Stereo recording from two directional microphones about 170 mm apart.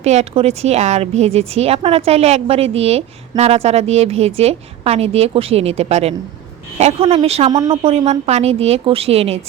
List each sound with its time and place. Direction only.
0.0 s a woman's voice: 40° right (ahead or behind)